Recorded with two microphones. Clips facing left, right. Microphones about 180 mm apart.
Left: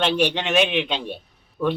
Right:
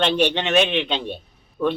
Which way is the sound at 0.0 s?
5° left (ahead or behind).